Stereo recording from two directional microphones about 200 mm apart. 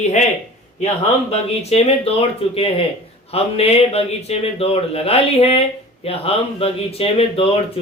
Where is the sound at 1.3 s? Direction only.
30° left (ahead or behind).